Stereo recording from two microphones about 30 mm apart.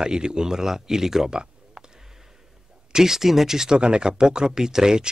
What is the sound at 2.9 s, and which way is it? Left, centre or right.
Speech, centre.